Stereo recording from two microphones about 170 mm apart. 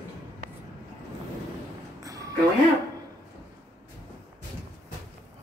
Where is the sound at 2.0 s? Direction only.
20° right (ahead or behind).